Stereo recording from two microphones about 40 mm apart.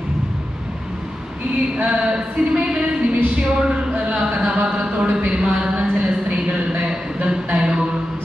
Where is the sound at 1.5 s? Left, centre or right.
Right.